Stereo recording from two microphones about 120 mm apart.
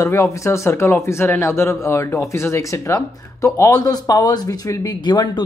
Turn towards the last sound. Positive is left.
turn(degrees=35)  # may be behind; listen again after turning